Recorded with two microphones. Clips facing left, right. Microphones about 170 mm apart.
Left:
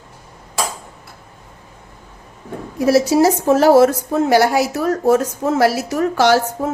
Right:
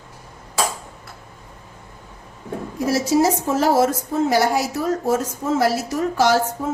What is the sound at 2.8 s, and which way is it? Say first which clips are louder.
A woman's voice: left 5 dB; 70° left (ahead or behind).